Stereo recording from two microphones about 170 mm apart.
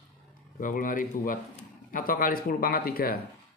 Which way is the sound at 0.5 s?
50° left (ahead or behind).